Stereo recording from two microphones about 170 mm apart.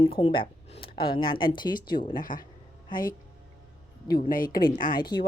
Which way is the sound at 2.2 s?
55° left (ahead or behind).